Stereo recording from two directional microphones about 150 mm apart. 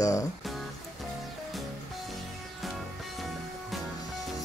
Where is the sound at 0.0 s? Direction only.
20° left (ahead or behind).